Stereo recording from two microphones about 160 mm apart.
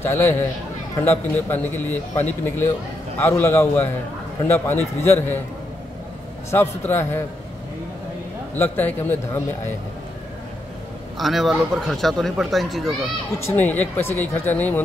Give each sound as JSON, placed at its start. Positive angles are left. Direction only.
{"t": 0.0, "sound": "a man's voice", "side_deg": 15}
{"t": 6.5, "sound": "a man's voice", "side_deg": 15}
{"t": 8.5, "sound": "a man's voice", "side_deg": 10}
{"t": 11.1, "sound": "speech", "side_deg": 0}
{"t": 13.5, "sound": "a man's voice", "side_deg": 10}